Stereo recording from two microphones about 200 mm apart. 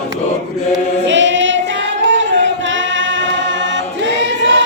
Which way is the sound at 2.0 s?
65° right (ahead or behind).